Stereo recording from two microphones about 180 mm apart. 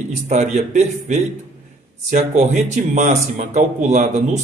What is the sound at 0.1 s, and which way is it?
A man's voice, 40° right (ahead or behind).